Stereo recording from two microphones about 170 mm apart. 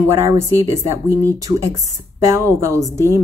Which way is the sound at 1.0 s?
15° right (ahead or behind).